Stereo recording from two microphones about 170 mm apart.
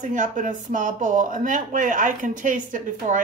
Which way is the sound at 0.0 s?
50° right (ahead or behind).